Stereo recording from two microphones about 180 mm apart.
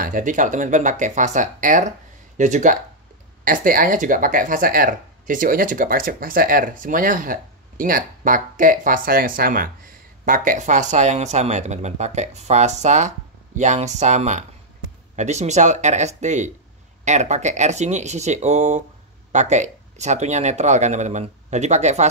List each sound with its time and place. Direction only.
0.0 s speech: 45° right (ahead or behind)